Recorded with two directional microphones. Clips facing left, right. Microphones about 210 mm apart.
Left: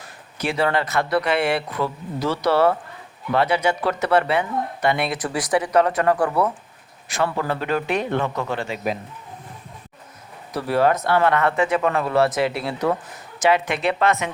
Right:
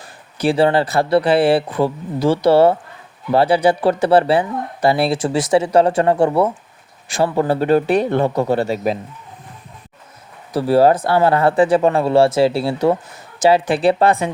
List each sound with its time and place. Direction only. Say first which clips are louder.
0.0 s speech: right 8 dB; 30° right (ahead or behind)
10.5 s speech: right 6 dB; 30° right (ahead or behind)